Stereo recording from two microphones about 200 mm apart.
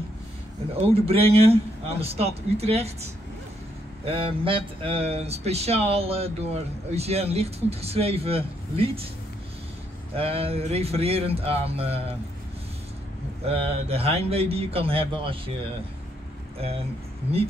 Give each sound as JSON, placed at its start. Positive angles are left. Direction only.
{"t": 0.9, "sound": "a man's voice", "side_deg": -30}
{"t": 4.0, "sound": "speech", "side_deg": -30}
{"t": 10.1, "sound": "speech", "side_deg": -30}
{"t": 13.5, "sound": "speech", "side_deg": -30}
{"t": 16.5, "sound": "speech", "side_deg": -30}